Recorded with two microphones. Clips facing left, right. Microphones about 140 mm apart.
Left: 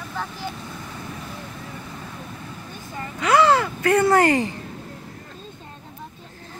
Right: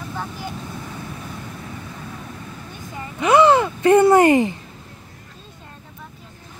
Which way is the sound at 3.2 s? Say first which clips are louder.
Right 3 dB; 20° right (ahead or behind).